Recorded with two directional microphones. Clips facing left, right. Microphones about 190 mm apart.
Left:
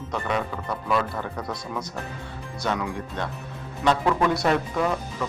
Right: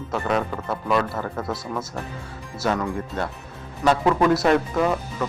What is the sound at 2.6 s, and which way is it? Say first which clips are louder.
Speech: right 4 dB; centre (ahead or behind).